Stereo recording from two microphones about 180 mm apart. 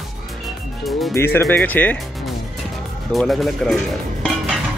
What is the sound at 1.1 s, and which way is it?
Speech, 15° left (ahead or behind).